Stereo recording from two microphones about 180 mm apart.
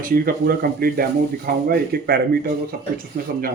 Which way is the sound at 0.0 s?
55° right (ahead or behind).